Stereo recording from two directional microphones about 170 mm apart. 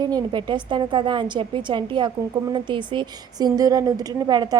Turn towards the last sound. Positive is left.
turn(degrees=-20)  # may be behind; listen again after turning